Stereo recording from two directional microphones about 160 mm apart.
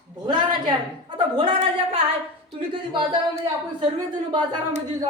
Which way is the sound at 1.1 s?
30° right (ahead or behind).